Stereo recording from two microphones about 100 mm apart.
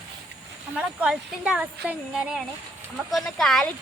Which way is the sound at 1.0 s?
10° right (ahead or behind).